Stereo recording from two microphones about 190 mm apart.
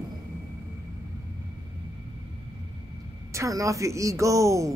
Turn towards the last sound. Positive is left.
turn(degrees=-15)  # may be behind; listen again after turning